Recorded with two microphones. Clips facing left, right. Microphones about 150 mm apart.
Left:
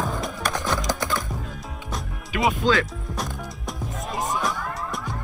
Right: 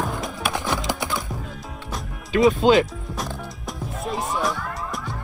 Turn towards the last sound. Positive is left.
turn(degrees=0)  # may be behind; listen again after turning